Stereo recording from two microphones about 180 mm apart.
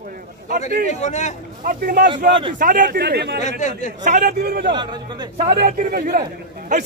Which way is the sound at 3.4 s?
45° left (ahead or behind).